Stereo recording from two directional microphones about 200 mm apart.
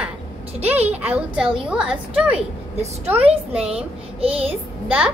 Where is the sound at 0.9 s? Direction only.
5° right (ahead or behind).